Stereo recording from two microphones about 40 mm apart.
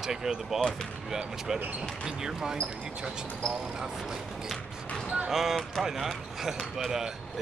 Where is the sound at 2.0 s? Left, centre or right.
Centre.